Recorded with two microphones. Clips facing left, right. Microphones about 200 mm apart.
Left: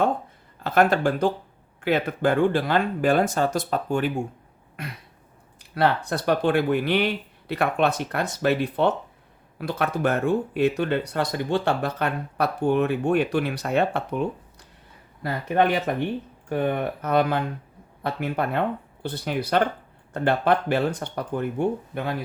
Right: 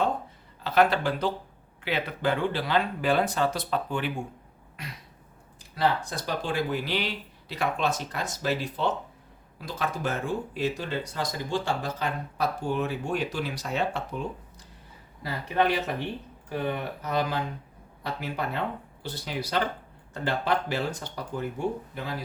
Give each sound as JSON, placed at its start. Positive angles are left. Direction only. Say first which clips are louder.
{"t": 0.6, "sound": "speech", "louder": "left 3 dB", "side_deg": 50}
{"t": 4.8, "sound": "speech", "louder": "left 5 dB", "side_deg": 55}